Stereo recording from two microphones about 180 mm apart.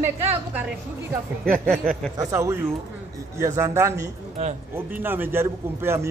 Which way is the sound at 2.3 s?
15° right (ahead or behind).